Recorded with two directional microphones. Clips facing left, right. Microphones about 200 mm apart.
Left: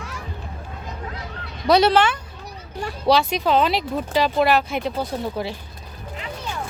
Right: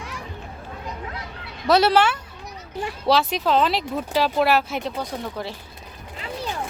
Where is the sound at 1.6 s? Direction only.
5° right (ahead or behind).